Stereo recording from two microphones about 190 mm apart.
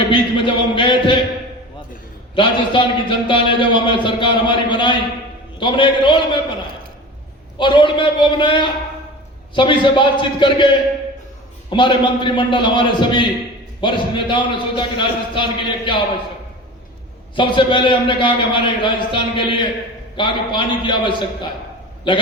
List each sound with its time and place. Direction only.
0.1 s a man's voice: 25° left (ahead or behind)
2.3 s a man's voice: 25° left (ahead or behind)
7.6 s a man's voice: 25° left (ahead or behind)
11.7 s a man's voice: 25° left (ahead or behind)
17.3 s a man's voice: 25° left (ahead or behind)